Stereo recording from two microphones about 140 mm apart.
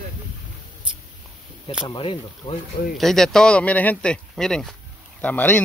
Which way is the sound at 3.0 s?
Centre (ahead or behind).